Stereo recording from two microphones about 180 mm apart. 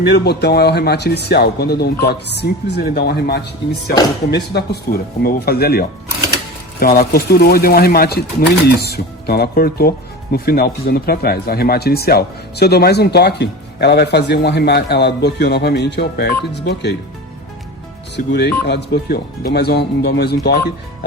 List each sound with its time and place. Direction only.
0.1 s speech: 65° left (ahead or behind)
18.3 s speech: 70° left (ahead or behind)